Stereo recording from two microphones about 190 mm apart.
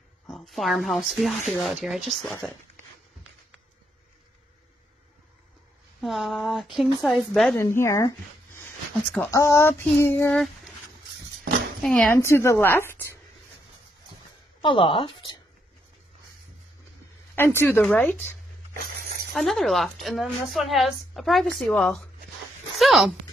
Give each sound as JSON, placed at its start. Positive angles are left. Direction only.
{"t": 0.3, "sound": "a woman's voice", "side_deg": 0}
{"t": 2.2, "sound": "child singing", "side_deg": 10}
{"t": 5.9, "sound": "a woman's voice", "side_deg": 0}
{"t": 7.6, "sound": "child singing", "side_deg": 15}
{"t": 9.3, "sound": "child singing", "side_deg": 15}
{"t": 11.8, "sound": "speech", "side_deg": 0}
{"t": 12.2, "sound": "child singing", "side_deg": 15}
{"t": 14.6, "sound": "speech", "side_deg": 25}
{"t": 17.4, "sound": "child singing", "side_deg": 10}
{"t": 18.7, "sound": "a sound", "side_deg": -50}
{"t": 19.3, "sound": "a woman's voice", "side_deg": 0}